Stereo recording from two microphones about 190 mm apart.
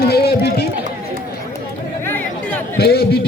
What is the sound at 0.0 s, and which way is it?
Run, 55° left (ahead or behind).